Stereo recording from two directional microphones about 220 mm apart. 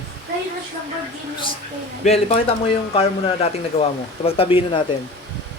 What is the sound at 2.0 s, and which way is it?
Speech, 30° left (ahead or behind).